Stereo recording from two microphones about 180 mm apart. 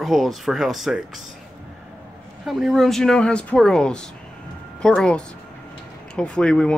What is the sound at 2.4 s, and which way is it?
Speech, centre (ahead or behind).